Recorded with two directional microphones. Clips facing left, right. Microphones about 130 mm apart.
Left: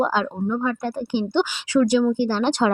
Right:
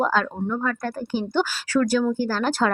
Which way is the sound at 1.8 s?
5° left (ahead or behind).